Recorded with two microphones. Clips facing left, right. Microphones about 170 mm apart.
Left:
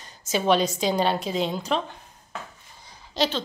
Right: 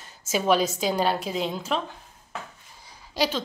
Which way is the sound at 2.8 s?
10° right (ahead or behind).